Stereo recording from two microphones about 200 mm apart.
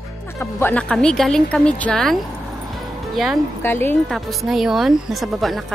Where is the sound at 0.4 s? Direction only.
10° left (ahead or behind).